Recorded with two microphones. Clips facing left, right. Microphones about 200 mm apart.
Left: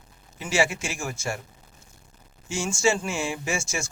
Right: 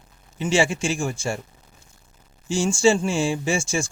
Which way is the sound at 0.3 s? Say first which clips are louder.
Right 4 dB; 30° right (ahead or behind).